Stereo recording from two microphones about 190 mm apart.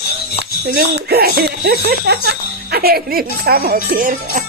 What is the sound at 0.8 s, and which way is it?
Speech, 55° right (ahead or behind).